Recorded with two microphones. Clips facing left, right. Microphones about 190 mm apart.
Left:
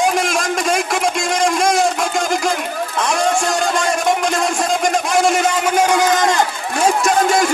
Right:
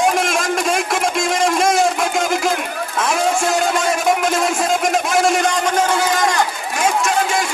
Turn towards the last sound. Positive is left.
turn(degrees=35)  # may be behind; listen again after turning